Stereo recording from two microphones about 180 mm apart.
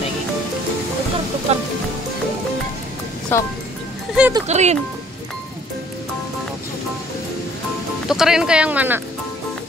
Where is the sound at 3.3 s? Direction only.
10° left (ahead or behind).